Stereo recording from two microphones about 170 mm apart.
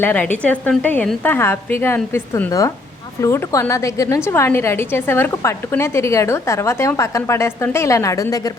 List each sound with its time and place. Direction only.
0.0 s a woman's voice: 10° left (ahead or behind)